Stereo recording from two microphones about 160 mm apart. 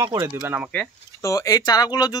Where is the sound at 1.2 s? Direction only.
20° left (ahead or behind).